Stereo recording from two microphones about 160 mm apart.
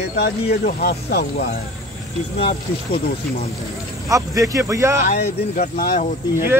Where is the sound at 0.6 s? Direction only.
75° left (ahead or behind).